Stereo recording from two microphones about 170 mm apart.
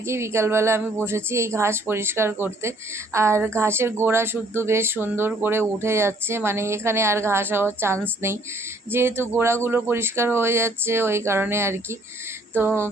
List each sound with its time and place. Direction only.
0.0 s speech: 15° right (ahead or behind)